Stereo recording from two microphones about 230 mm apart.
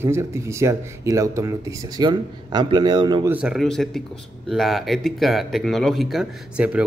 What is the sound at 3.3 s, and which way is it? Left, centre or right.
Speech, centre.